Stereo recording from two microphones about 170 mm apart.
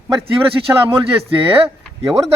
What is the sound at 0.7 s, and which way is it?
Speech, 15° right (ahead or behind).